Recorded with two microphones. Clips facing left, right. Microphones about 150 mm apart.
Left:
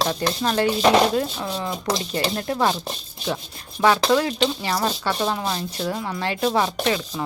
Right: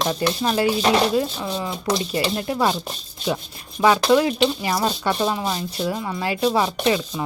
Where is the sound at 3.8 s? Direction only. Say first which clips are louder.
Right 2 dB; 15° right (ahead or behind).